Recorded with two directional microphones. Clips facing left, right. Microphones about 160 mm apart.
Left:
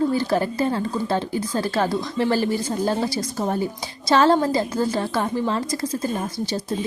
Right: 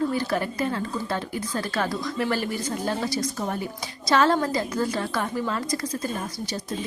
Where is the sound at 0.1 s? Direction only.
30° left (ahead or behind).